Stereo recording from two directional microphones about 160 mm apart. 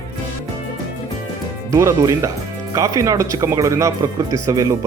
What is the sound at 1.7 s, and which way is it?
Speech, 20° right (ahead or behind).